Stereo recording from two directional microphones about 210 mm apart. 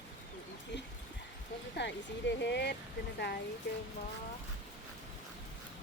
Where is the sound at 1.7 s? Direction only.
55° left (ahead or behind).